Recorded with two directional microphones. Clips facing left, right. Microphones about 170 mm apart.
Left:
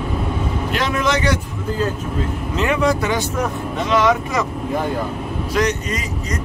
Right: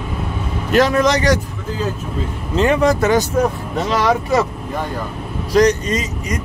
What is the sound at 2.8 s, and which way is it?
Speech, 45° right (ahead or behind).